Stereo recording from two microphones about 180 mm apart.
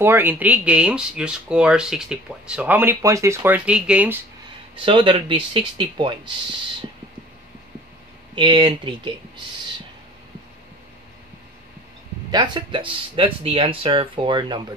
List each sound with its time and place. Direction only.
0.0 s speech: 10° right (ahead or behind)
4.7 s speech: 30° right (ahead or behind)
8.4 s speech: 25° right (ahead or behind)
12.3 s speech: 25° right (ahead or behind)